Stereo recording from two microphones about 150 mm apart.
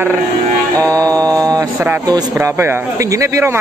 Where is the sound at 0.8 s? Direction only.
25° right (ahead or behind).